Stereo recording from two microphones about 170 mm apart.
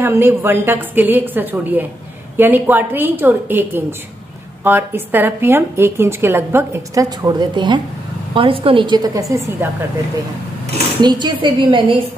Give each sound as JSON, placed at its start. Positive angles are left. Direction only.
{"t": 0.0, "sound": "a woman's voice", "side_deg": -15}
{"t": 11.0, "sound": "a woman's voice", "side_deg": -25}